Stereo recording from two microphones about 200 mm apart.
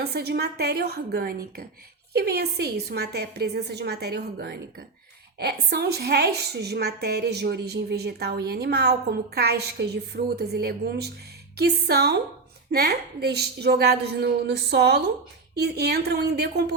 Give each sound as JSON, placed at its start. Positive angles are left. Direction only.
{"t": 0.0, "sound": "a woman's voice", "side_deg": -55}